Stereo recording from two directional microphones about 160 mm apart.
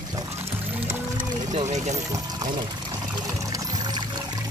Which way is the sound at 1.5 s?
45° right (ahead or behind).